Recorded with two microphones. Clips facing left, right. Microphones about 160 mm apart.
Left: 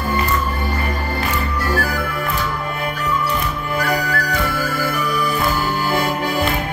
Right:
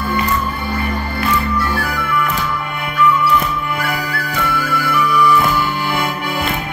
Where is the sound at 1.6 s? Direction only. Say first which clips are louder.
Even; 40° left (ahead or behind).